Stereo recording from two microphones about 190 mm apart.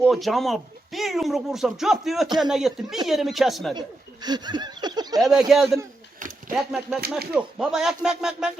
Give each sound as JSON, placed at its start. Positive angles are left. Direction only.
{"t": 0.0, "sound": "speech", "side_deg": 0}
{"t": 3.8, "sound": "a sound", "side_deg": -20}
{"t": 5.2, "sound": "speech", "side_deg": 0}